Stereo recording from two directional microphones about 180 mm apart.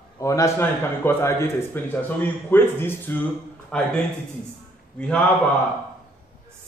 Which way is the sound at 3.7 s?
5° left (ahead or behind).